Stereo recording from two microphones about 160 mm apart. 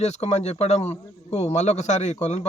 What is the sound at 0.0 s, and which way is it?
A man's voice, 45° left (ahead or behind).